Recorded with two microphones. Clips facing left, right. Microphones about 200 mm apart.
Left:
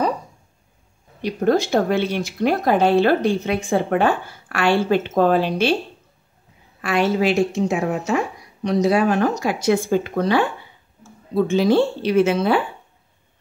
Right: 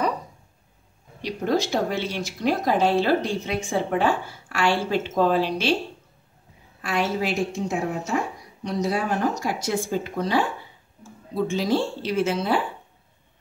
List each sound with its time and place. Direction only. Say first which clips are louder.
1.2 s speech: left 5 dB; 55° left (ahead or behind)
6.8 s a woman's voice: left 6 dB; 65° left (ahead or behind)